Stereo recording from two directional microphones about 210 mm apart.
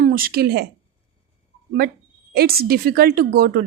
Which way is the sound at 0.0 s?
45° right (ahead or behind).